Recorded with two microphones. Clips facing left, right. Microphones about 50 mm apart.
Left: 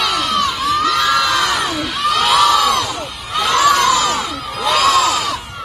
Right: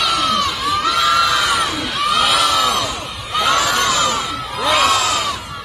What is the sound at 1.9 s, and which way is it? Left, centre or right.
Crowd, centre.